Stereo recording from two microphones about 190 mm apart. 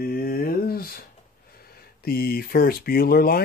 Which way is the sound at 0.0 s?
50° left (ahead or behind).